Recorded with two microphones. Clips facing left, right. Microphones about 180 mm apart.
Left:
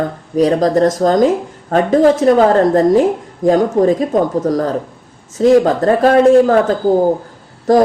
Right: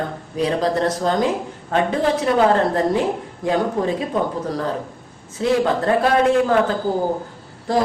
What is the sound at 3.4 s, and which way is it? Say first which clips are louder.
A man's voice: left 9 dB; 45° left (ahead or behind).